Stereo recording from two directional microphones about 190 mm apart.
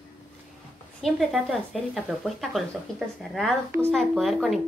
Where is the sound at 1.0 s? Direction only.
Centre (ahead or behind).